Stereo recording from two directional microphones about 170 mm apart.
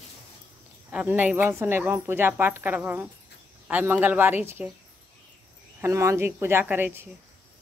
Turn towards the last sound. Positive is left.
turn(degrees=-10)  # may be behind; listen again after turning